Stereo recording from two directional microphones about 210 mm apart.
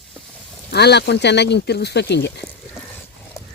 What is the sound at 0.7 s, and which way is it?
Speech, 50° left (ahead or behind).